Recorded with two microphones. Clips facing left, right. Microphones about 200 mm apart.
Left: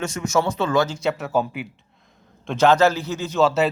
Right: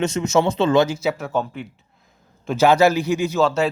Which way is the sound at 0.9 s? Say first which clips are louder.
Right 1 dB; 5° right (ahead or behind).